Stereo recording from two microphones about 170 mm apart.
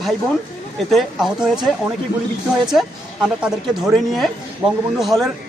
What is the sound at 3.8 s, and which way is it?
A man's voice, centre (ahead or behind).